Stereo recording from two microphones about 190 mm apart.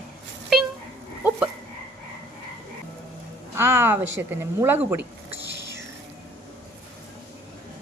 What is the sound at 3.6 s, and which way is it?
Speech, 10° right (ahead or behind).